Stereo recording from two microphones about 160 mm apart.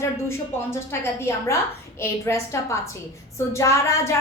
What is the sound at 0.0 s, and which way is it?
A woman's voice, 15° left (ahead or behind).